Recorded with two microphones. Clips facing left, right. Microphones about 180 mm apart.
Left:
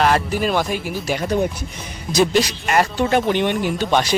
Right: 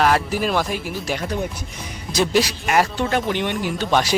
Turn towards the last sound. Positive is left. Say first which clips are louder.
# left 1 dB
turn(degrees=-5)  # may be behind; listen again after turning